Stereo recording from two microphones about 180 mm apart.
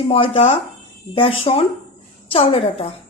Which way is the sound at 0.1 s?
30° left (ahead or behind).